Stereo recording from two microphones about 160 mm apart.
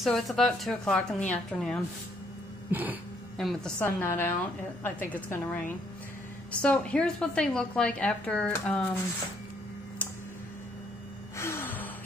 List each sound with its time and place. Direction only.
0.0 s a woman's voice: centre (ahead or behind)
2.7 s music: 10° right (ahead or behind)
3.3 s a woman's voice: centre (ahead or behind)
3.8 s a woman's voice: 15° left (ahead or behind)
11.3 s gasp: 15° left (ahead or behind)